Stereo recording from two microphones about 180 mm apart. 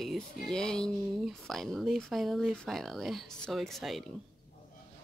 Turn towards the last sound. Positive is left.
turn(degrees=0)  # may be behind; listen again after turning